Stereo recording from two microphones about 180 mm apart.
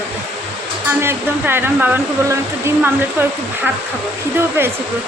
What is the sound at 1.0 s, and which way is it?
Speech, 10° right (ahead or behind).